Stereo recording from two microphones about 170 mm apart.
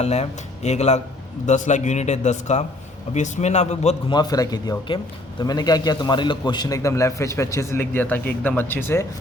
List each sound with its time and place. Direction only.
0.0 s a man's voice: 40° left (ahead or behind)
4.1 s a man's voice: 25° left (ahead or behind)